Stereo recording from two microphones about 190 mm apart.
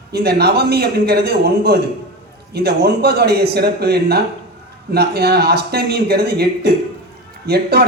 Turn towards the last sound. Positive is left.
turn(degrees=-55)  # may be behind; listen again after turning